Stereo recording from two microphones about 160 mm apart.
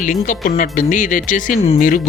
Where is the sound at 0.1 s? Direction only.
55° left (ahead or behind).